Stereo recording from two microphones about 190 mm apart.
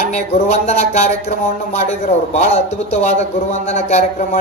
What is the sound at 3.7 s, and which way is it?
Speech, 35° left (ahead or behind).